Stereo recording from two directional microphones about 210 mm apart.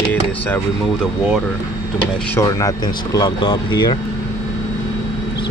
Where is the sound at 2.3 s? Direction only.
15° left (ahead or behind).